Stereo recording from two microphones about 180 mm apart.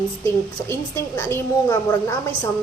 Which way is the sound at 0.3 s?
15° left (ahead or behind).